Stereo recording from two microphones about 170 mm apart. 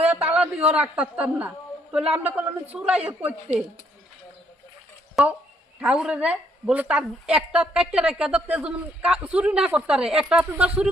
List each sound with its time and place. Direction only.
0.1 s a woman's voice: 10° right (ahead or behind)
5.8 s a woman's voice: 5° right (ahead or behind)